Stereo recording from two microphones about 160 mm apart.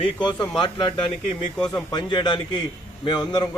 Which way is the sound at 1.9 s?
25° left (ahead or behind).